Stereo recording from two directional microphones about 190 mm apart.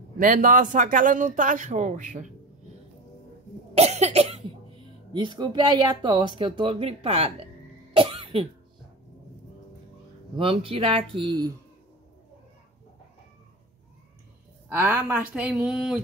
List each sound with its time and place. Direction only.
0.2 s speech: 45° right (ahead or behind)
3.7 s cough: 35° right (ahead or behind)
5.1 s speech: 25° right (ahead or behind)
7.9 s cough: 30° right (ahead or behind)
10.3 s speech: 30° right (ahead or behind)
14.7 s speech: 10° right (ahead or behind)